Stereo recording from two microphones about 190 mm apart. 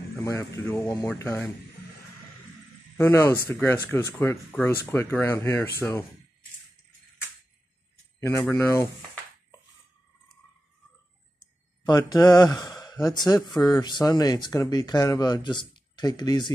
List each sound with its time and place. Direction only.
0.2 s speech: 15° left (ahead or behind)
3.0 s speech: 15° left (ahead or behind)
8.3 s speech: 15° left (ahead or behind)
11.8 s speech: 20° left (ahead or behind)